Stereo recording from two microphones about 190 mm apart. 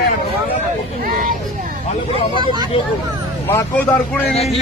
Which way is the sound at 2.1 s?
25° right (ahead or behind).